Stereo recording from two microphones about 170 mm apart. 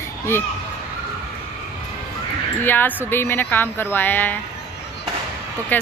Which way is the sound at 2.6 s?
10° left (ahead or behind).